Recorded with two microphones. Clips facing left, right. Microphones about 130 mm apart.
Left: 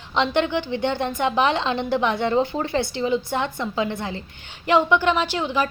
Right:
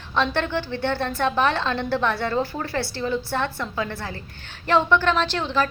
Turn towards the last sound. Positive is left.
turn(degrees=15)  # may be behind; listen again after turning